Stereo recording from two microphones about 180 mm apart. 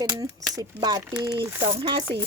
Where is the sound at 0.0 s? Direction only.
20° right (ahead or behind).